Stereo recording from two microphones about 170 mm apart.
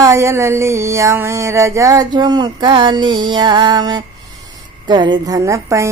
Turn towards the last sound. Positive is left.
turn(degrees=-15)  # may be behind; listen again after turning